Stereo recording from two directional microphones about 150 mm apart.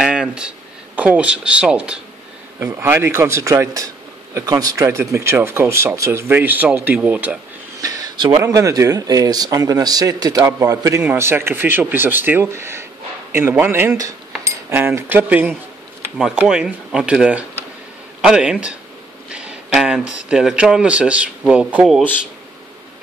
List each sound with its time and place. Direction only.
0.0 s speech: 5° right (ahead or behind)
2.6 s a man's voice: 15° right (ahead or behind)
7.8 s a man's voice: 25° right (ahead or behind); by 22.0 s 5° right (ahead or behind)